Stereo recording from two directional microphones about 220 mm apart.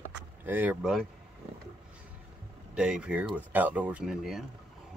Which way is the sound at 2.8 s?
5° right (ahead or behind).